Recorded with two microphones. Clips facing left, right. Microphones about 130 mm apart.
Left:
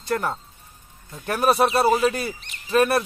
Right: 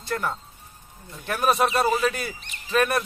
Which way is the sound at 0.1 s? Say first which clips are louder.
Left 3 dB; 40° left (ahead or behind).